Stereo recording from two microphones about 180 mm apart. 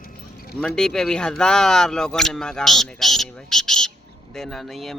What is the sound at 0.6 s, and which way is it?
Speech, 5° left (ahead or behind).